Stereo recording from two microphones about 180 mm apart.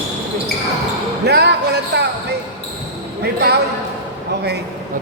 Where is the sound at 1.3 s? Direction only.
65° right (ahead or behind).